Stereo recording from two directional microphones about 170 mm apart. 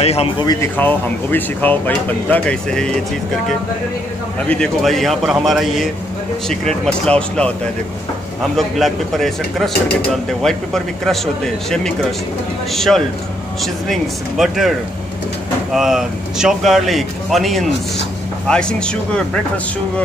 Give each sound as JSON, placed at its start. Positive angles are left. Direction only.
{"t": 0.0, "sound": "speech", "side_deg": 35}
{"t": 0.5, "sound": "speech", "side_deg": 15}
{"t": 4.5, "sound": "speech", "side_deg": 5}
{"t": 8.5, "sound": "speech", "side_deg": 0}
{"t": 15.7, "sound": "speech", "side_deg": 0}